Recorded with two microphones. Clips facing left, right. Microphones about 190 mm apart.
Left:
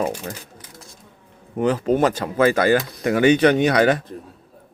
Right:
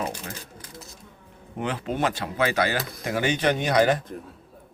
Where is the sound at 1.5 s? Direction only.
40° left (ahead or behind); by 4.0 s 70° left (ahead or behind).